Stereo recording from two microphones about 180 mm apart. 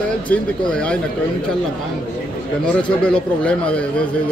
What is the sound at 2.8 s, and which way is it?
A man's voice, 5° left (ahead or behind).